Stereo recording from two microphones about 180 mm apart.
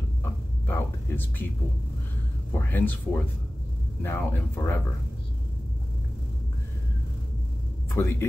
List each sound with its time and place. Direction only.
0.7 s a sound: 10° left (ahead or behind)
2.5 s speech: 10° left (ahead or behind)
7.9 s speech: 15° left (ahead or behind)